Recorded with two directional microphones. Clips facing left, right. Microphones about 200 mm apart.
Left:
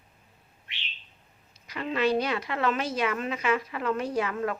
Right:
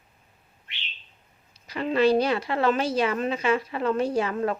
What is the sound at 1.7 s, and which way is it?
A woman's voice, 30° right (ahead or behind).